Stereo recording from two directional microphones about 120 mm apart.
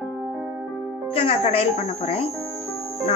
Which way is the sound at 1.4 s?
65° left (ahead or behind).